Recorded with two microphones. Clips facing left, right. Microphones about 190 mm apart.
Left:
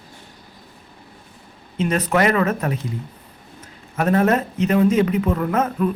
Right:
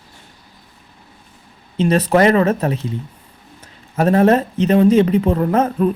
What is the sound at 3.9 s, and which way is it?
Speech, 30° right (ahead or behind).